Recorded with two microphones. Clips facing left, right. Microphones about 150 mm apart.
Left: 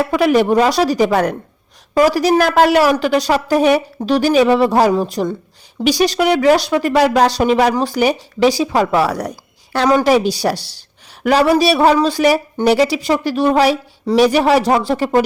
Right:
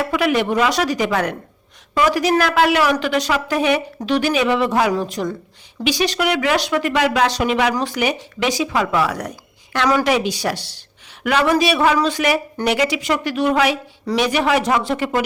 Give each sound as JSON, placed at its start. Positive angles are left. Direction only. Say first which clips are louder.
{"t": 0.0, "sound": "speech", "louder": "left 5 dB", "side_deg": 40}